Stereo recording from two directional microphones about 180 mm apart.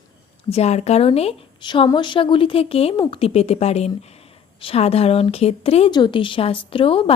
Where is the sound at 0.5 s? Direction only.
35° left (ahead or behind).